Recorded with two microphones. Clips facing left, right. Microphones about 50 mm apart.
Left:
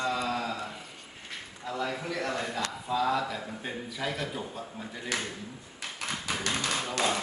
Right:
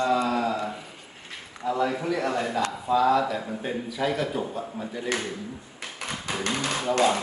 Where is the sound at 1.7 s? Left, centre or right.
Centre.